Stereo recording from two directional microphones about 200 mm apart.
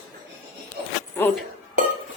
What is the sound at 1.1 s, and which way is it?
Speech, 10° left (ahead or behind).